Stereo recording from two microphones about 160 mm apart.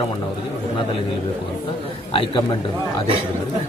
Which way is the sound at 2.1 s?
30° left (ahead or behind).